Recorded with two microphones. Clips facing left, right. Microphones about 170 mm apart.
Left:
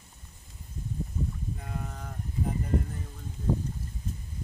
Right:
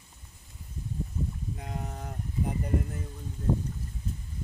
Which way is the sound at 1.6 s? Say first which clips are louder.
Right 1 dB; 20° right (ahead or behind).